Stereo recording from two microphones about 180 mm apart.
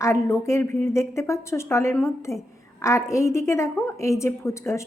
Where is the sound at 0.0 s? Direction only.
15° left (ahead or behind).